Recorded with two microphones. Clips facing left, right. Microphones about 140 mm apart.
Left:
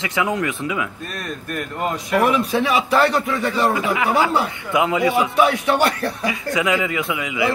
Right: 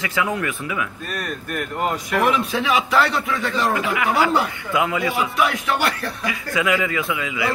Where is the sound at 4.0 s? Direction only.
25° left (ahead or behind).